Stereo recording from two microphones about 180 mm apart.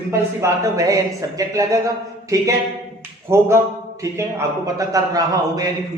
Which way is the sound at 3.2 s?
15° right (ahead or behind).